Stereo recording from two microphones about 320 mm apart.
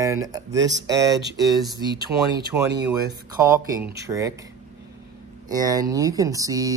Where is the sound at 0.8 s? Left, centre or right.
Centre.